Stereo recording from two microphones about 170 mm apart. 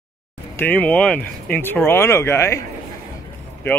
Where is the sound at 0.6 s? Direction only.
10° left (ahead or behind).